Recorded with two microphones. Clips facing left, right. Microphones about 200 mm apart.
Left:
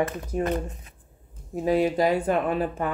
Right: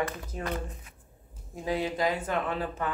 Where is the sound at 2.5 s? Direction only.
25° left (ahead or behind).